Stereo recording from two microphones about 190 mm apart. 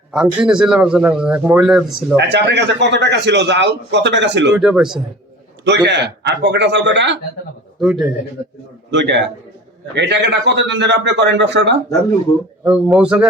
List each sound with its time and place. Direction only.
0.3 s speech: 5° right (ahead or behind)
2.1 s a man's voice: 65° right (ahead or behind)
4.5 s speech: 5° right (ahead or behind)
5.6 s a man's voice: 65° right (ahead or behind)
7.8 s a man's voice: 5° right (ahead or behind)
8.9 s a man's voice: 65° right (ahead or behind)
12.6 s speech: 5° right (ahead or behind)